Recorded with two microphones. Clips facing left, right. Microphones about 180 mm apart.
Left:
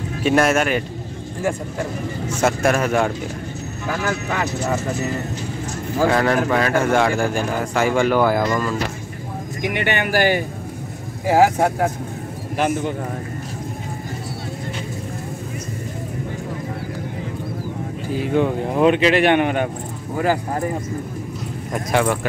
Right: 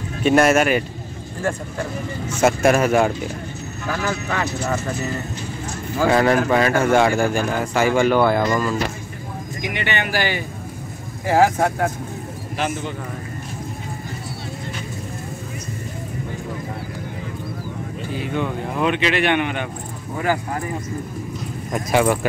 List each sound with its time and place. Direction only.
0.2 s a man's voice: centre (ahead or behind)
2.4 s speech: 5° right (ahead or behind)
3.8 s speech: 10° left (ahead or behind)
6.0 s a man's voice: 5° right (ahead or behind)
9.6 s speech: 55° left (ahead or behind)
11.2 s speech: 15° left (ahead or behind)
12.5 s speech: 50° left (ahead or behind)
18.1 s speech: 35° left (ahead or behind)
21.7 s speech: 10° right (ahead or behind)